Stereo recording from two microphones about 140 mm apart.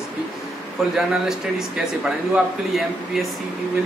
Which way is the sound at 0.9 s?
5° right (ahead or behind).